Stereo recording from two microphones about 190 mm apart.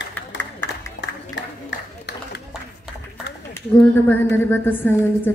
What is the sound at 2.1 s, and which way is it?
Run, 60° left (ahead or behind).